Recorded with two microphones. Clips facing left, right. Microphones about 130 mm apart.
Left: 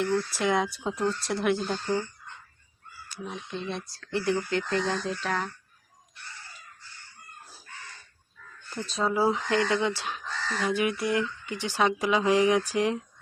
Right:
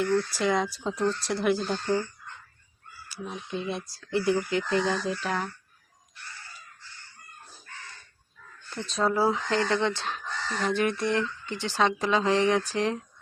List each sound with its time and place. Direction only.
0.0 s speech: centre (ahead or behind)
3.1 s speech: 5° right (ahead or behind)
8.7 s speech: centre (ahead or behind)
9.1 s speech: 15° left (ahead or behind)
9.8 s speech: 5° left (ahead or behind)